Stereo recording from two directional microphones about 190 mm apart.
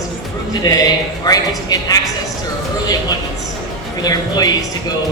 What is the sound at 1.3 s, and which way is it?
Speech, 20° left (ahead or behind).